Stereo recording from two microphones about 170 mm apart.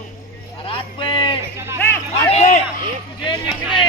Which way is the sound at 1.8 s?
15° left (ahead or behind).